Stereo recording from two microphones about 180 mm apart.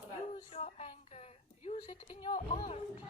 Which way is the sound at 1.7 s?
35° left (ahead or behind).